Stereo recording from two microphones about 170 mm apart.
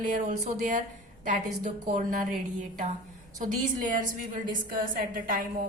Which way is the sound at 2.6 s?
45° right (ahead or behind).